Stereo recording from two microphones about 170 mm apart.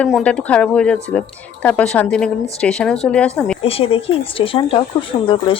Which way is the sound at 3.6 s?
35° left (ahead or behind).